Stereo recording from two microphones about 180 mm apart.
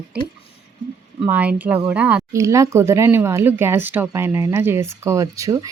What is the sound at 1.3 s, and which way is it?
Speech, 10° right (ahead or behind).